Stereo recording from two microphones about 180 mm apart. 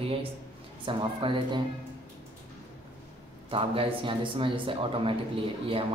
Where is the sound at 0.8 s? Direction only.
30° right (ahead or behind).